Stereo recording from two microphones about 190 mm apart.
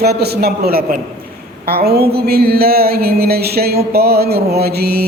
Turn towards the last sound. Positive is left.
turn(degrees=-55)  # may be behind; listen again after turning